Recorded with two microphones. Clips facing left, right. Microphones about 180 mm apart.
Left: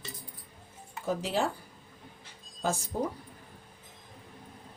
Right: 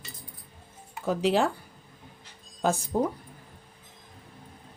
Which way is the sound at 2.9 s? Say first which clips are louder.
Right 6 dB; 55° right (ahead or behind).